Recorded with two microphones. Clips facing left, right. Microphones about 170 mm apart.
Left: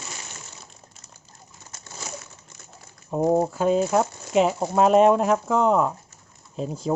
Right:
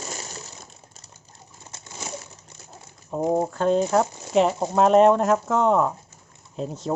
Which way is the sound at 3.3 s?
5° left (ahead or behind).